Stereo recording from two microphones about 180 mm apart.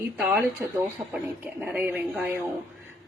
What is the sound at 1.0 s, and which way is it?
Speech, 15° right (ahead or behind).